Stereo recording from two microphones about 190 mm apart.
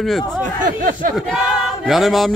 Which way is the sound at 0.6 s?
45° right (ahead or behind).